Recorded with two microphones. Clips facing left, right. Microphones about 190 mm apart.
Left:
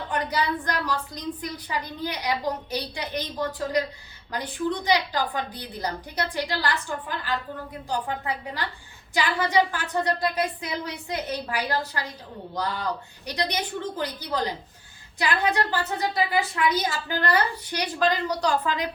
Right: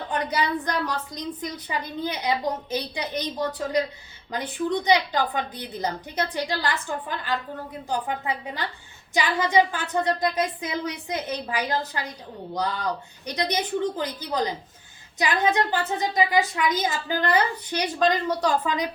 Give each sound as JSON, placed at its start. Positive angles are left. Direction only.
{"t": 0.1, "sound": "a woman's voice", "side_deg": -20}
{"t": 7.9, "sound": "a woman's voice", "side_deg": -20}
{"t": 13.2, "sound": "a woman's voice", "side_deg": -20}